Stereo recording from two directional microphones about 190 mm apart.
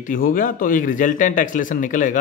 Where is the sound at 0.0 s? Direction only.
45° left (ahead or behind).